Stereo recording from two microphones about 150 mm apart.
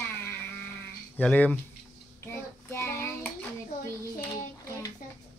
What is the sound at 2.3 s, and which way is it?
Child singing, 15° left (ahead or behind).